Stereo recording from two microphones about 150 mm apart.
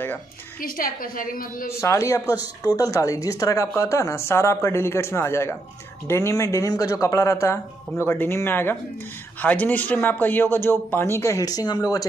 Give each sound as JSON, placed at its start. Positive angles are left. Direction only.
{"t": 0.6, "sound": "a woman's voice", "side_deg": 70}
{"t": 1.7, "sound": "speech", "side_deg": 20}